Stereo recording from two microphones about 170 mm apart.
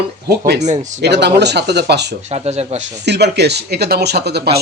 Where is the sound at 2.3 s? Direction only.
40° right (ahead or behind).